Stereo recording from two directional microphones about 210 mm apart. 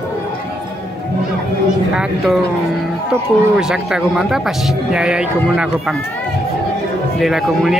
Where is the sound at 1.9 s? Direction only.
Centre (ahead or behind).